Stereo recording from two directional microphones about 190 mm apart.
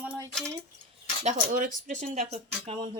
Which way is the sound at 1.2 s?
45° right (ahead or behind).